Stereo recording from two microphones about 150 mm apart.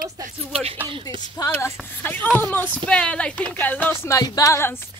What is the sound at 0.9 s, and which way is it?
Speech, 30° right (ahead or behind).